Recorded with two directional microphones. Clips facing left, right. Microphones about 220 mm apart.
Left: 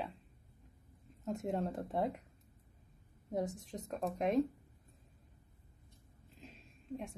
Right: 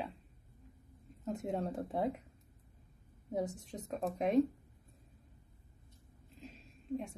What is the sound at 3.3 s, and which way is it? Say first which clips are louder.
Speech: even; centre (ahead or behind).